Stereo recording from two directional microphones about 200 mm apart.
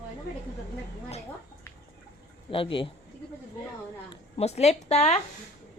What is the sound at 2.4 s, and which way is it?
Speech, 25° left (ahead or behind).